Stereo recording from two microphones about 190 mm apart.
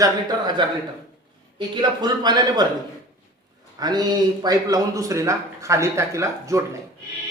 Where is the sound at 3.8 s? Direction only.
20° right (ahead or behind).